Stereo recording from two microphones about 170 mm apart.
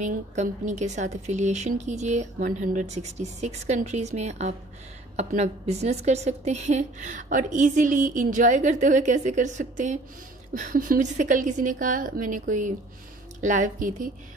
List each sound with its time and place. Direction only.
0.0 s a woman's voice: 45° right (ahead or behind)